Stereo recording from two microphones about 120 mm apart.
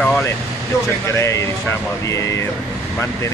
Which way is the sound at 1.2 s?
25° left (ahead or behind).